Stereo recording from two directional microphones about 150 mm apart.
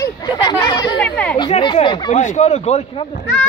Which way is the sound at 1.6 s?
30° left (ahead or behind).